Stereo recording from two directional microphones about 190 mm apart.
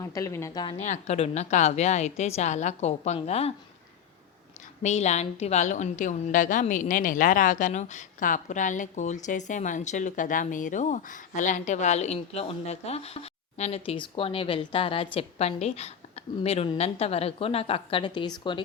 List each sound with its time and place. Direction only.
0.0 s a woman's voice: 20° left (ahead or behind)
0.8 s a woman's voice: 35° left (ahead or behind)
4.8 s a woman's voice: 35° left (ahead or behind)